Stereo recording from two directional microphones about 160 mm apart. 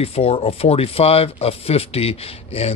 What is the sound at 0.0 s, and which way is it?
Speech, 40° left (ahead or behind).